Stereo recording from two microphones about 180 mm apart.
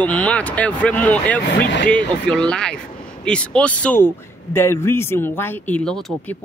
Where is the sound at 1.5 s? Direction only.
70° left (ahead or behind).